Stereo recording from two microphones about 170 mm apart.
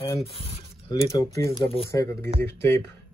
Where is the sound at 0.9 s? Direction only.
20° left (ahead or behind).